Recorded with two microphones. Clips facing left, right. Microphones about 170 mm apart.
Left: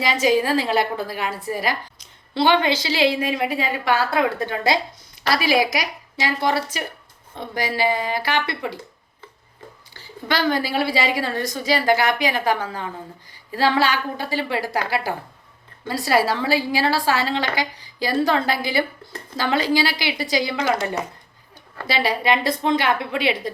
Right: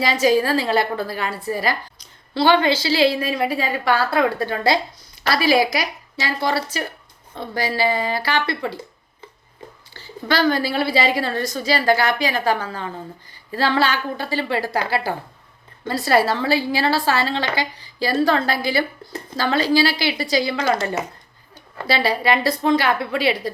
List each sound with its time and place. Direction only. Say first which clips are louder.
0.0 s a woman's voice: right 2 dB; 15° left (ahead or behind)
9.9 s a woman's voice: right 3 dB; 15° left (ahead or behind)
21.8 s a woman's voice: right 1 dB; 15° left (ahead or behind)